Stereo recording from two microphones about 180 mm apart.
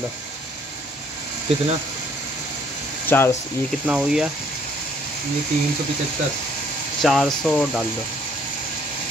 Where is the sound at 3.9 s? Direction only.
5° right (ahead or behind).